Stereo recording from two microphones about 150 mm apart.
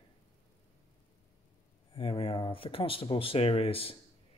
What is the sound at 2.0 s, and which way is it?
Speech, 35° left (ahead or behind).